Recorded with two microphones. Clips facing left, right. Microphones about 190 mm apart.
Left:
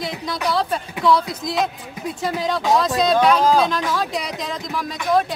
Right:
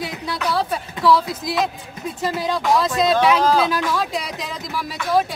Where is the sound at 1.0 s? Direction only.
Centre (ahead or behind).